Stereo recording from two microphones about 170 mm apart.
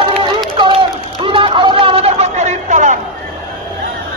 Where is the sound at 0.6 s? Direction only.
30° right (ahead or behind).